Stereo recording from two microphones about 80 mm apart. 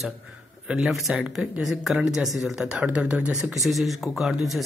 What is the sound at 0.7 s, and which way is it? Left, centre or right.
Speech, centre.